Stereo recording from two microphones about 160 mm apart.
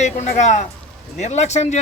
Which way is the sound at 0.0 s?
45° left (ahead or behind).